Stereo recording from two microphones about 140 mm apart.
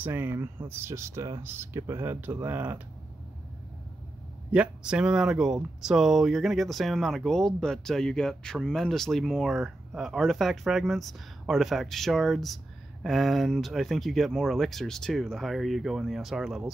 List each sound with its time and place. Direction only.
0.0 s speech: 15° right (ahead or behind)
4.5 s speech: 10° right (ahead or behind)